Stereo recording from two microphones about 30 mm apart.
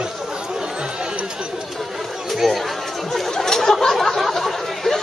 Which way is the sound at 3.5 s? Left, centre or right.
Centre.